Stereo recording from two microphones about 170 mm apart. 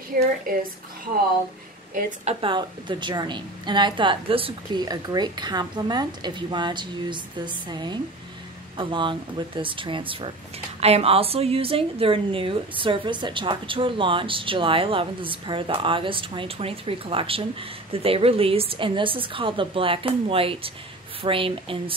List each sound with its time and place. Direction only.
0.1 s a woman's voice: 60° right (ahead or behind)
2.0 s a woman's voice: 50° right (ahead or behind)
2.4 s a woman's voice: 30° right (ahead or behind)